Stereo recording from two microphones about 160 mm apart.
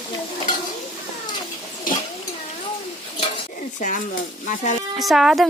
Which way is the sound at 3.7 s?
55° left (ahead or behind).